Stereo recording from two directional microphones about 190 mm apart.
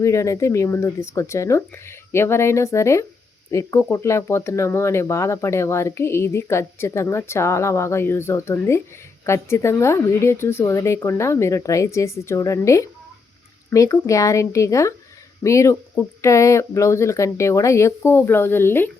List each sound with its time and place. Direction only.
0.0 s speech: 15° left (ahead or behind)